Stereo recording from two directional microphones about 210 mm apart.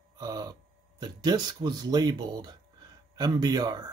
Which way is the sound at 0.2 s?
15° right (ahead or behind).